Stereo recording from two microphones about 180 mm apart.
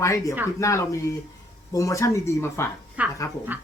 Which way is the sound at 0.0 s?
15° left (ahead or behind).